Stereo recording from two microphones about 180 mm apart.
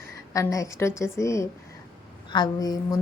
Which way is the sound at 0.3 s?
20° left (ahead or behind).